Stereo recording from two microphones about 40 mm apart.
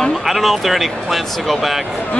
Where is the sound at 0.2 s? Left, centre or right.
Centre.